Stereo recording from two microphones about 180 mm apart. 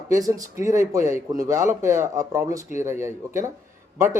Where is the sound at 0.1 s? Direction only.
20° right (ahead or behind).